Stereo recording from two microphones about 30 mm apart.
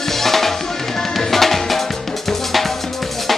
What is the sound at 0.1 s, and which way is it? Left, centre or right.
Music, centre.